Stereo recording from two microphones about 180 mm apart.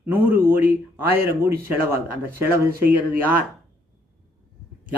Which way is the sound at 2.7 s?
55° right (ahead or behind).